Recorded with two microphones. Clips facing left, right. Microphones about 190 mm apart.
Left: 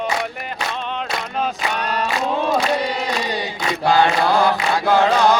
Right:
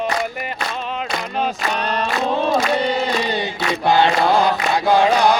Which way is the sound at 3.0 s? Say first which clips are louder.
Right 2 dB; 25° right (ahead or behind).